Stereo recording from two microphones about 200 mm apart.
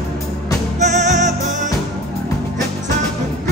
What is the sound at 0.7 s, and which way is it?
Music, 35° right (ahead or behind).